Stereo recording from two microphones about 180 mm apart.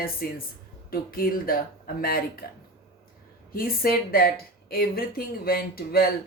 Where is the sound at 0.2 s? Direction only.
55° left (ahead or behind).